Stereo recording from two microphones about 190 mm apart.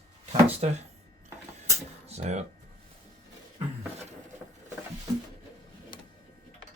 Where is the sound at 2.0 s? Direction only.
35° right (ahead or behind).